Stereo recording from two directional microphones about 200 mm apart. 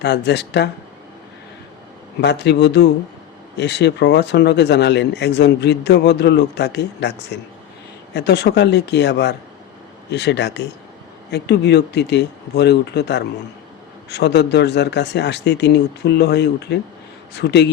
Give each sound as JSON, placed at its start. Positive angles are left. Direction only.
{"t": 0.0, "sound": "speech", "side_deg": 55}
{"t": 2.2, "sound": "speech", "side_deg": 60}